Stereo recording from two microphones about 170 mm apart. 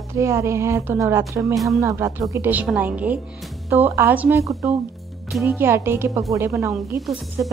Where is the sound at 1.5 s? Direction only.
Centre (ahead or behind).